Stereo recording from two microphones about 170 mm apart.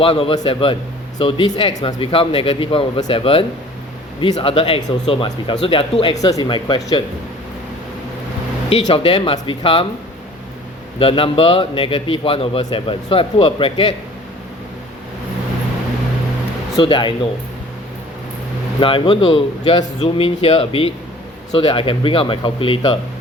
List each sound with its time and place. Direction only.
0.0 s a man's voice: 30° left (ahead or behind)
8.7 s a man's voice: 35° left (ahead or behind)
11.0 s a man's voice: 30° left (ahead or behind)
16.7 s speech: 30° left (ahead or behind)
18.8 s a man's voice: 30° left (ahead or behind)